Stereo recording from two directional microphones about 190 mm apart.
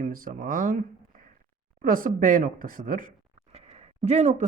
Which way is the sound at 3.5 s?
35° right (ahead or behind).